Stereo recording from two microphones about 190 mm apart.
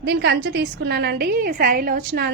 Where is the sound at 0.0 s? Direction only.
55° right (ahead or behind).